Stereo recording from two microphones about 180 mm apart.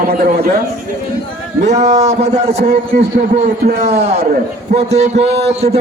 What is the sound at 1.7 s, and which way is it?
Speech, 40° right (ahead or behind).